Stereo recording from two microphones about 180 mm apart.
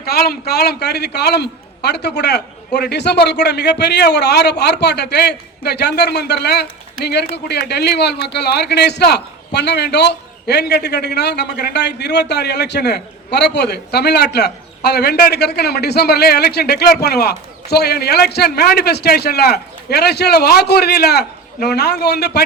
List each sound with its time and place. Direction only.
0.0 s a man's voice: 60° left (ahead or behind)